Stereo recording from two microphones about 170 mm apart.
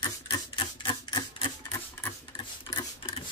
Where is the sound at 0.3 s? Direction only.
30° left (ahead or behind).